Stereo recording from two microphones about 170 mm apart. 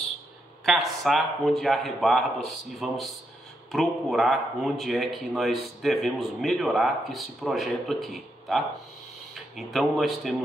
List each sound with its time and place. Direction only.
0.7 s speech: centre (ahead or behind)